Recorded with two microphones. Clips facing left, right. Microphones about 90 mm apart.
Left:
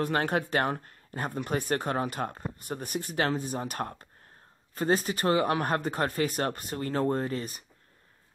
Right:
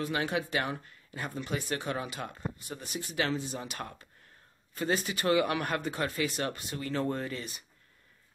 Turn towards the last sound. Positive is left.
turn(degrees=40)  # may be behind; listen again after turning